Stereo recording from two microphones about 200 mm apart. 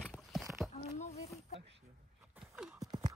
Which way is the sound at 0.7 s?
30° left (ahead or behind).